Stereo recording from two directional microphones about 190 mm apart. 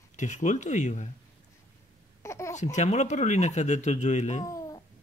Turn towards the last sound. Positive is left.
turn(degrees=20)  # may be behind; listen again after turning